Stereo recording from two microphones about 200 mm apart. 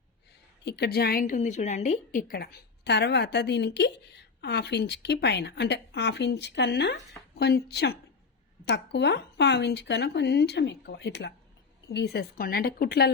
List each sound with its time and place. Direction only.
0.6 s a woman's voice: 55° left (ahead or behind)